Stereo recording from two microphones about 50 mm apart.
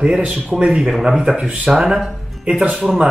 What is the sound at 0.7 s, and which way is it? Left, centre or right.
Speech, centre.